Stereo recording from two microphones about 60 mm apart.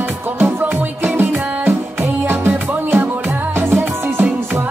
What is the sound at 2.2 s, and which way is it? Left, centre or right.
Music, right.